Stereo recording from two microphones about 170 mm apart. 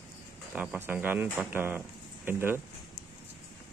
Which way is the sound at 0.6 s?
10° right (ahead or behind).